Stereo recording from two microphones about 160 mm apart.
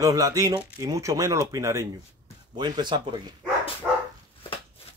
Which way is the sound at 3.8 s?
5° right (ahead or behind).